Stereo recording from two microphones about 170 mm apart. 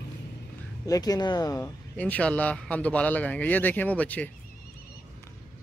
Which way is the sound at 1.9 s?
10° left (ahead or behind).